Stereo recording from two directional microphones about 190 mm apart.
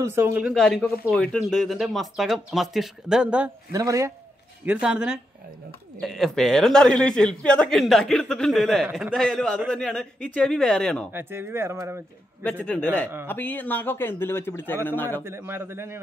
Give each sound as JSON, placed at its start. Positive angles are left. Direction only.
{"t": 0.0, "sound": "a man's voice", "side_deg": -10}
{"t": 3.7, "sound": "speech", "side_deg": -15}
{"t": 4.6, "sound": "a man's voice", "side_deg": -5}
{"t": 11.1, "sound": "speech", "side_deg": -10}
{"t": 12.4, "sound": "a man's voice", "side_deg": 5}
{"t": 15.2, "sound": "speech", "side_deg": -10}